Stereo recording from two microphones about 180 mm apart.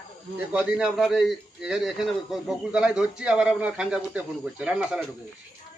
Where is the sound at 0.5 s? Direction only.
5° right (ahead or behind).